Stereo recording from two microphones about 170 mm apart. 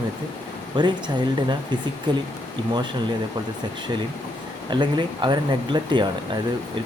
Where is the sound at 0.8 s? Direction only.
25° right (ahead or behind).